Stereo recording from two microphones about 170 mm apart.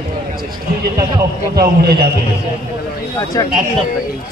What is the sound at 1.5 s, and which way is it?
Speech, 65° right (ahead or behind).